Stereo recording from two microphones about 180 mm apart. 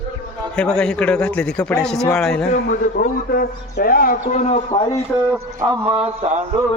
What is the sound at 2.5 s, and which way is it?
A man's voice, 50° left (ahead or behind).